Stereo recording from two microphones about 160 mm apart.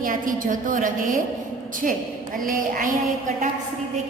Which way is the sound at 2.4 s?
55° right (ahead or behind).